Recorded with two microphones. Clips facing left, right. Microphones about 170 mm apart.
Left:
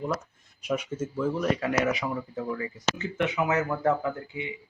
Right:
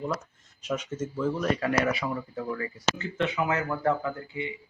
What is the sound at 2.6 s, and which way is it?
Speech, 20° left (ahead or behind).